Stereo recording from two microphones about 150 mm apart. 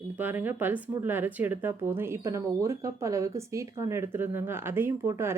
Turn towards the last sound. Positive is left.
turn(degrees=-15)  # may be behind; listen again after turning